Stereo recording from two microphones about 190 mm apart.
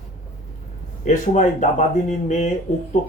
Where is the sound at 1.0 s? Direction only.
40° left (ahead or behind).